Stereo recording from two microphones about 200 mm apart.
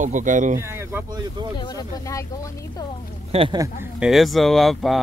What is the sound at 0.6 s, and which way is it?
Speech, 10° right (ahead or behind).